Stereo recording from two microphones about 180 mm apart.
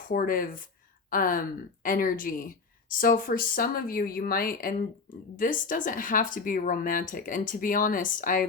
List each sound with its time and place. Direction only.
0.1 s speech: 50° left (ahead or behind)